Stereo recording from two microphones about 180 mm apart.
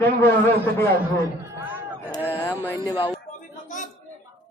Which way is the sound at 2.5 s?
15° left (ahead or behind).